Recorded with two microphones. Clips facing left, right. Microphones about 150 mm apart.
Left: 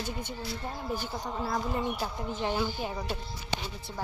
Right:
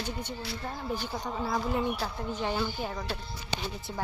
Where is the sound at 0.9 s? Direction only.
5° left (ahead or behind).